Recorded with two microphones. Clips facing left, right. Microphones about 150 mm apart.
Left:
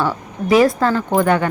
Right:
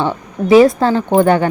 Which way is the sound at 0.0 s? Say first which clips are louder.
Right 3 dB; 25° right (ahead or behind).